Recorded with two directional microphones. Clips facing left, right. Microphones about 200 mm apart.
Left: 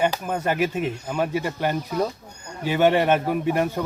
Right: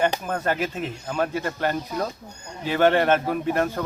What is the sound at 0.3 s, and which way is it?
Speech, 15° left (ahead or behind).